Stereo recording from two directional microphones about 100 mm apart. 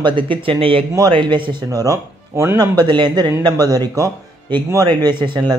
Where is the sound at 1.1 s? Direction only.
55° right (ahead or behind).